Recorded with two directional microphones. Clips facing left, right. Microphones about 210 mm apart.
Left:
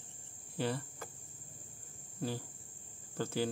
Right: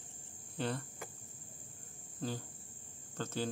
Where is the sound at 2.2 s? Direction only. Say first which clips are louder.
Left 2 dB; 10° left (ahead or behind).